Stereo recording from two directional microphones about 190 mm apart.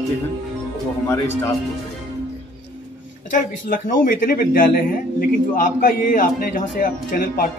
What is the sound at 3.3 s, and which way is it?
A man's voice, 45° left (ahead or behind).